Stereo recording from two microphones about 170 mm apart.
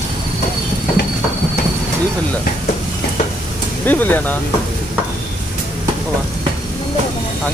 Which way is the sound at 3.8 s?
10° left (ahead or behind).